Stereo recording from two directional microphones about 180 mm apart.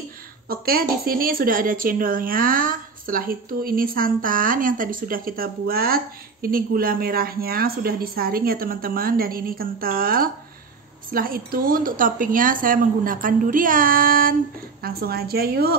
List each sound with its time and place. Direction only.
0.5 s a woman's voice: 55° right (ahead or behind)